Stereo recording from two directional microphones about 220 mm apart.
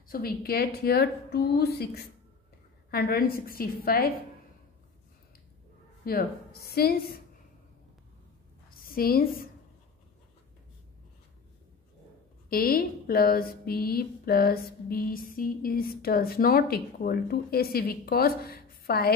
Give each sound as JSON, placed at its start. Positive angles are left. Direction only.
{"t": 0.1, "sound": "speech", "side_deg": 45}
{"t": 2.9, "sound": "speech", "side_deg": 45}
{"t": 6.0, "sound": "speech", "side_deg": 45}
{"t": 8.6, "sound": "a sound", "side_deg": 40}
{"t": 12.4, "sound": "speech", "side_deg": 40}